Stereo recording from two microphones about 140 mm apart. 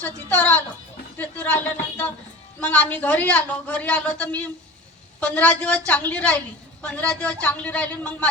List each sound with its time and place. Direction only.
0.0 s a woman's voice: 10° left (ahead or behind)